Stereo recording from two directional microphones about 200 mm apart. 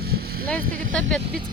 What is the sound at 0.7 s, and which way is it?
Speech, 45° right (ahead or behind).